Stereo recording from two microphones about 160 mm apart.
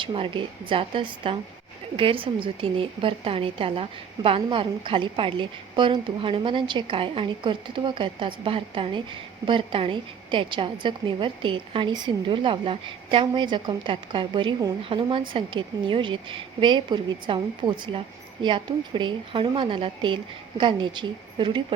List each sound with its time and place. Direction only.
0.0 s a woman's voice: 30° right (ahead or behind)